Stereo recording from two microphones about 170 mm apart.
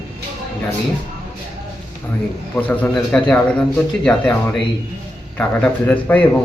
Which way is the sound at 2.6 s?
10° left (ahead or behind).